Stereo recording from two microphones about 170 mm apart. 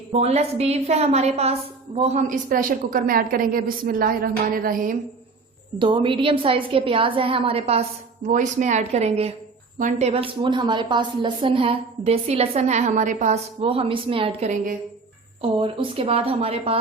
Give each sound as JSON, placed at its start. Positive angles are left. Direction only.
{"t": 0.1, "sound": "a woman's voice", "side_deg": -40}
{"t": 5.8, "sound": "a woman's voice", "side_deg": -30}
{"t": 8.3, "sound": "a woman's voice", "side_deg": -45}
{"t": 15.4, "sound": "a woman's voice", "side_deg": -30}